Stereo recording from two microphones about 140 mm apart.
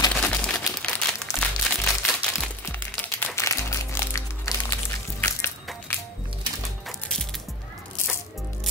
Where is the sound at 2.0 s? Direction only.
5° left (ahead or behind).